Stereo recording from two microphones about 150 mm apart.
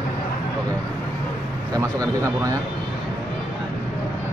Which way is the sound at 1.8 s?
20° right (ahead or behind).